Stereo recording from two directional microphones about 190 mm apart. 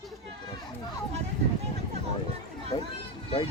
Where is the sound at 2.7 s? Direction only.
20° left (ahead or behind).